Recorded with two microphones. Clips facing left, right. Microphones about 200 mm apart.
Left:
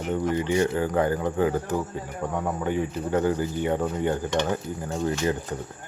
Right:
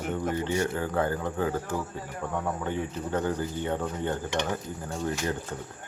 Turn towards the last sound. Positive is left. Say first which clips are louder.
# left 5 dB
turn(degrees=10)  # may be behind; listen again after turning